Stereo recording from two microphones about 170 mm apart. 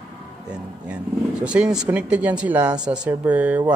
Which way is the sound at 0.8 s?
5° right (ahead or behind).